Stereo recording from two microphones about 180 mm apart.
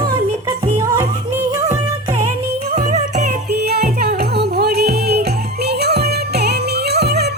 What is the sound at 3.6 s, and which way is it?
Music, 60° right (ahead or behind).